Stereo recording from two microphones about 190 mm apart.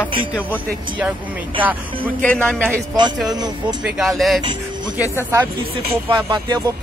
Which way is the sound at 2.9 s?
25° right (ahead or behind).